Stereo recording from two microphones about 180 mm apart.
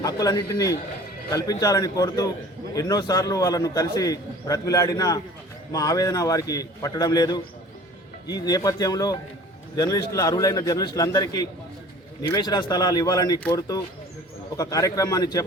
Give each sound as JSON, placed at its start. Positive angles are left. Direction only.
{"t": 0.0, "sound": "a man's voice", "side_deg": 20}